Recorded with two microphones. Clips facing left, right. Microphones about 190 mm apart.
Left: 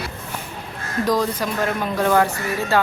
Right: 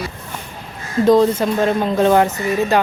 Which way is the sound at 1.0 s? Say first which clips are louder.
Right 9 dB; 25° right (ahead or behind).